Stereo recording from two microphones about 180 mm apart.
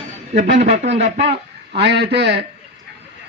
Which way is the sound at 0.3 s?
40° right (ahead or behind).